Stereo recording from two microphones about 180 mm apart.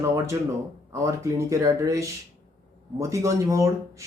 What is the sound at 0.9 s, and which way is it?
A man's voice, 15° right (ahead or behind).